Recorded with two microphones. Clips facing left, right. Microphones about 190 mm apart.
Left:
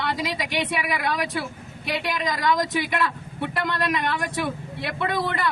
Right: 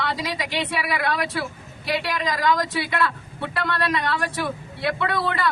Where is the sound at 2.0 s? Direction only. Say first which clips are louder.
Even; 20° left (ahead or behind).